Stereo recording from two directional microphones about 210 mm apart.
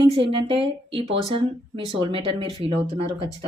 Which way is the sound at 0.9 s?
25° right (ahead or behind).